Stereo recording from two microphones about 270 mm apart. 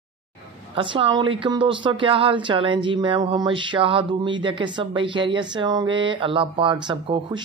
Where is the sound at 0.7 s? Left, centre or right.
Centre.